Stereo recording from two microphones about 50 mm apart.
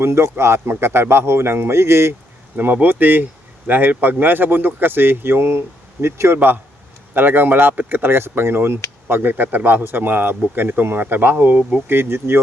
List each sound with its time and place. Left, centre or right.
0.0 s speech: right
2.7 s speech: right
9.0 s speech: right
11.9 s speech: right